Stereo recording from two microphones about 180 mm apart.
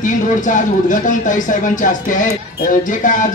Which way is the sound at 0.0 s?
45° left (ahead or behind).